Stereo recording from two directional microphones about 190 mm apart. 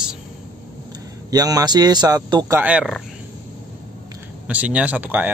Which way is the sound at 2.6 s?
5° right (ahead or behind).